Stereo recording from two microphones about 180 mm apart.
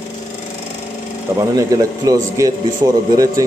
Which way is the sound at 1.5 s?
20° right (ahead or behind).